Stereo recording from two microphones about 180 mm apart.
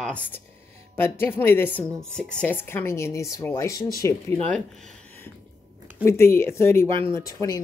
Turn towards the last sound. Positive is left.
turn(degrees=20)  # may be behind; listen again after turning